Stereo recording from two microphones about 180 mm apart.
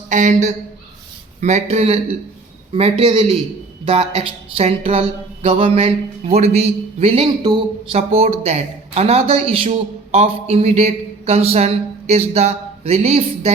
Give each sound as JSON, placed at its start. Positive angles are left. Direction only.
{"t": 0.1, "sound": "speech", "side_deg": -45}